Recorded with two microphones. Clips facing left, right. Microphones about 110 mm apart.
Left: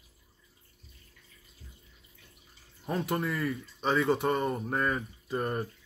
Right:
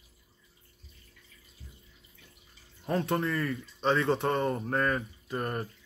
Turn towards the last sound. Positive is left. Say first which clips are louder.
# left 2 dB
turn(degrees=10)  # may be behind; listen again after turning